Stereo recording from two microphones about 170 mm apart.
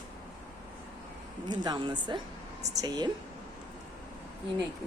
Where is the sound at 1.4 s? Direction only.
25° right (ahead or behind).